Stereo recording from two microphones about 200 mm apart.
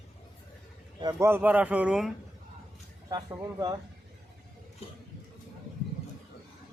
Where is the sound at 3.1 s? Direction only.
20° right (ahead or behind).